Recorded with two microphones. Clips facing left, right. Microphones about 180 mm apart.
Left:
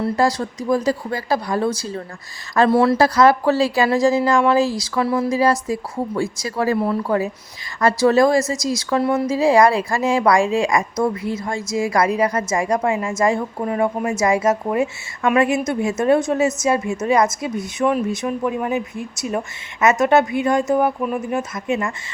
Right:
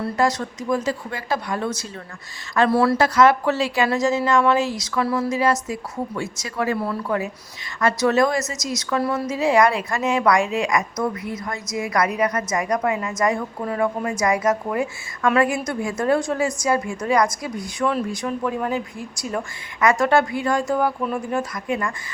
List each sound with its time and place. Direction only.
0.0 s a woman's voice: 30° left (ahead or behind)
3.2 s a woman's voice: 35° left (ahead or behind)